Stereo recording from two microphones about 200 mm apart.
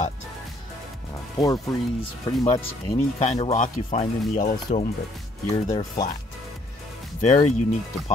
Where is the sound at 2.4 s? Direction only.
25° left (ahead or behind).